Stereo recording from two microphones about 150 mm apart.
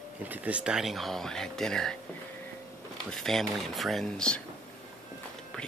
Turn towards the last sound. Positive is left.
turn(degrees=5)  # may be behind; listen again after turning